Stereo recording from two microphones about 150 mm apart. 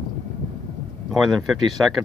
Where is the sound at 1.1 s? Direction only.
Centre (ahead or behind).